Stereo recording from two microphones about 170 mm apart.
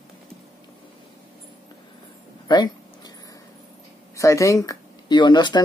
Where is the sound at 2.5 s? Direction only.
25° left (ahead or behind).